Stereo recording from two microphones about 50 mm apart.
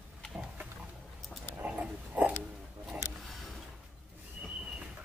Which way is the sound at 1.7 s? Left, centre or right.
Right.